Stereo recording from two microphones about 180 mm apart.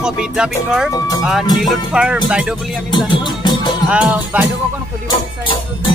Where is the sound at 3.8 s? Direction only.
5° right (ahead or behind).